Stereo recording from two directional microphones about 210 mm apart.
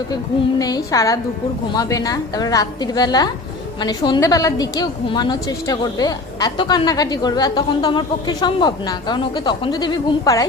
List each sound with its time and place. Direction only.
0.6 s a woman's voice: 15° left (ahead or behind)